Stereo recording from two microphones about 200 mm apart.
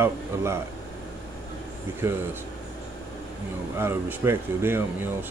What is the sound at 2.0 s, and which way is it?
Speech, 10° right (ahead or behind).